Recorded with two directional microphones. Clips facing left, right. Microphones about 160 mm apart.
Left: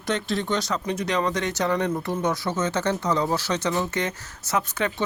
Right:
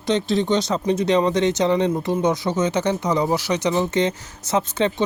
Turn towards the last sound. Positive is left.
turn(degrees=-20)  # may be behind; listen again after turning